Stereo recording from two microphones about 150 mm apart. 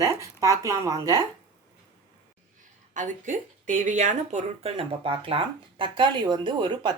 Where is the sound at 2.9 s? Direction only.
55° right (ahead or behind).